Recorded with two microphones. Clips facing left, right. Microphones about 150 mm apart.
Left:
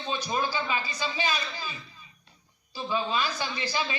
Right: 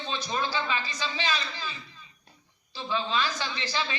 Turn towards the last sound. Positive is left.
turn(degrees=10)  # may be behind; listen again after turning